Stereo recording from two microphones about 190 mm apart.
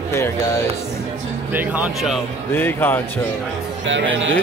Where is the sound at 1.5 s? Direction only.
5° right (ahead or behind).